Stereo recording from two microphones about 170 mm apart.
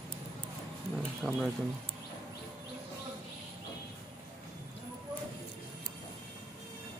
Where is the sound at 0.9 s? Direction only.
Centre (ahead or behind).